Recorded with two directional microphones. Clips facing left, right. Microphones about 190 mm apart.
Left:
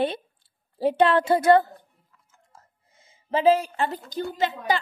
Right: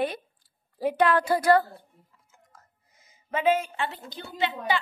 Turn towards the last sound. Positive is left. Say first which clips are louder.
# left 3 dB
turn(degrees=40)  # may be behind; listen again after turning